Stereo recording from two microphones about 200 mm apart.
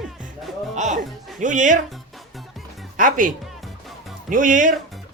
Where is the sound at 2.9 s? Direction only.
40° right (ahead or behind).